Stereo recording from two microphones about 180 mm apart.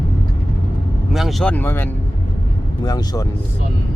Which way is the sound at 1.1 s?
Centre (ahead or behind).